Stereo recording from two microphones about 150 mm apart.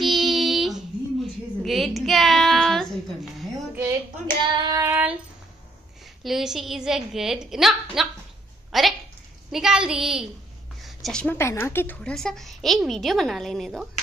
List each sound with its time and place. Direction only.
0.0 s a sound: centre (ahead or behind)
3.7 s child singing: 20° right (ahead or behind)
6.2 s a woman's voice: centre (ahead or behind)
10.8 s a sound: centre (ahead or behind)
11.3 s a woman's voice: 15° left (ahead or behind)
12.0 s a woman's voice: 5° left (ahead or behind)